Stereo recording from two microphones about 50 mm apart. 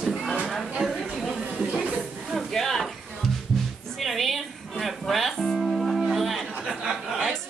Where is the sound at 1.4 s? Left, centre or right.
Right.